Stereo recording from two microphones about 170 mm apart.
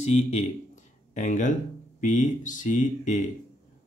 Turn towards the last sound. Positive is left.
turn(degrees=45)  # may be behind; listen again after turning